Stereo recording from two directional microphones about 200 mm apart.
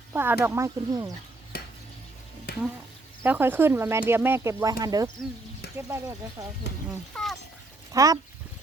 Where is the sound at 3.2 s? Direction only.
10° right (ahead or behind).